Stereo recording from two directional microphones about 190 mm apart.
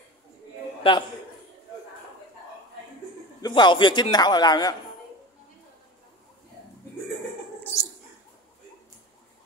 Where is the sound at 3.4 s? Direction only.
25° left (ahead or behind).